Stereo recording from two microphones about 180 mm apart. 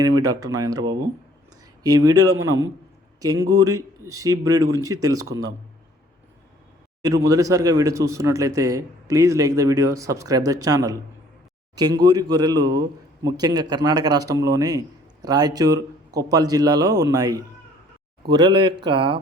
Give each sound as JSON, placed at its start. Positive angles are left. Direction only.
{"t": 0.0, "sound": "a man's voice", "side_deg": -20}
{"t": 7.0, "sound": "a man's voice", "side_deg": -20}